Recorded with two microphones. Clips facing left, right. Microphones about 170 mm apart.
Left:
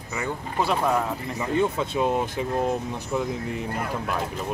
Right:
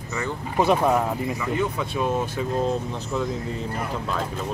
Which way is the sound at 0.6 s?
20° right (ahead or behind).